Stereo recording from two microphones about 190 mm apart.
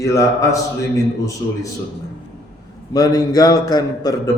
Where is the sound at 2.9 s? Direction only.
20° left (ahead or behind).